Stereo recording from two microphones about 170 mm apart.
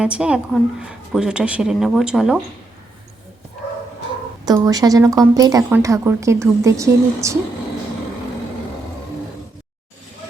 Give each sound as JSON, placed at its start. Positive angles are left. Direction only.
{"t": 0.0, "sound": "a woman's voice", "side_deg": -5}
{"t": 4.4, "sound": "speech", "side_deg": -20}